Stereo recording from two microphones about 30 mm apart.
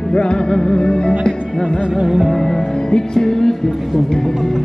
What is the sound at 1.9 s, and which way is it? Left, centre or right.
Music, centre.